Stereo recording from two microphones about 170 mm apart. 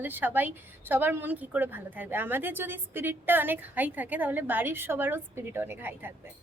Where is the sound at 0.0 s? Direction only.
10° right (ahead or behind).